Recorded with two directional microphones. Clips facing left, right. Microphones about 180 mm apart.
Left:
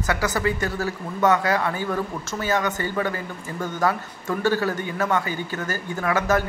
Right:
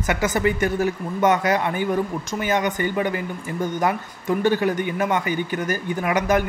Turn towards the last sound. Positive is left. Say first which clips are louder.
# right 2 dB
turn(degrees=-15)  # may be behind; listen again after turning